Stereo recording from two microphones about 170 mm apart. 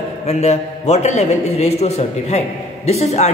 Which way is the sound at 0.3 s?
40° left (ahead or behind).